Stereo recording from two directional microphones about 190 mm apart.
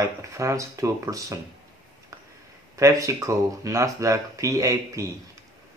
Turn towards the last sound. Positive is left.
turn(degrees=-15)  # may be behind; listen again after turning